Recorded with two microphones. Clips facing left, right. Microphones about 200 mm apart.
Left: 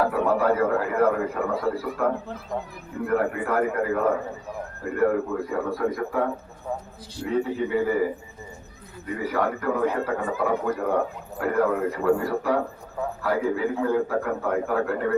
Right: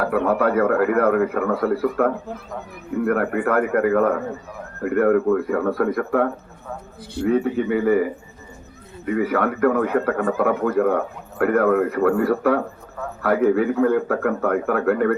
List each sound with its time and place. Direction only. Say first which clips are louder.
0.0 s speech: right 2 dB; 60° right (ahead or behind)
3.1 s speech: right 3 dB; 55° right (ahead or behind)
9.1 s speech: right 5 dB; 60° right (ahead or behind)